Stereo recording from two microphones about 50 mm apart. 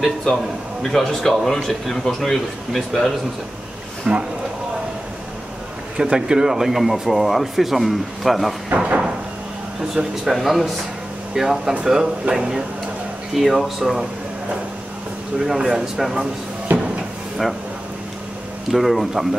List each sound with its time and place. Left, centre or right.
0.0 s a man's voice: centre
4.1 s speech: right
5.9 s a man's voice: centre
9.9 s a man's voice: centre
13.4 s a man's voice: centre
15.3 s speech: centre
16.7 s a sound: right
18.7 s a man's voice: centre